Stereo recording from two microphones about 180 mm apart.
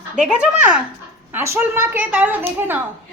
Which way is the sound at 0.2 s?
5° right (ahead or behind).